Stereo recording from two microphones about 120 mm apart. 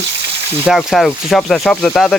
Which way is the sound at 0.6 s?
5° right (ahead or behind).